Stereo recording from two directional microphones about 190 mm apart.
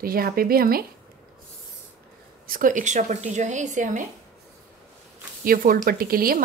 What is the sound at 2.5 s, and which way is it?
Speech, 45° right (ahead or behind).